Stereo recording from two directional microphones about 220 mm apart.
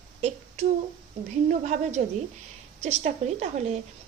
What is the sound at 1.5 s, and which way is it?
A woman's voice, 35° right (ahead or behind).